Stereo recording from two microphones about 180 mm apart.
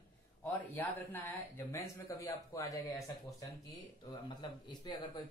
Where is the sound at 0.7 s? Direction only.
10° left (ahead or behind).